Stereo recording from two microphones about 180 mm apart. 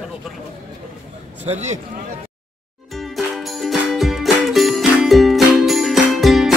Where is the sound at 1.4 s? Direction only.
40° right (ahead or behind).